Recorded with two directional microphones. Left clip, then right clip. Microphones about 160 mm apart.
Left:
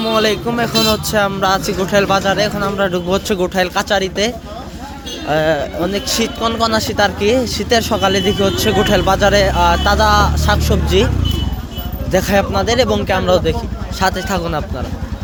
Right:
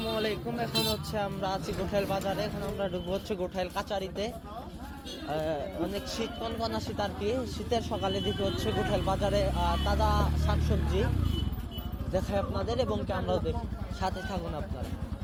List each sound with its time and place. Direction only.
0.0 s speech: 40° left (ahead or behind)
5.3 s a man's voice: 50° left (ahead or behind)
12.1 s a man's voice: 60° left (ahead or behind)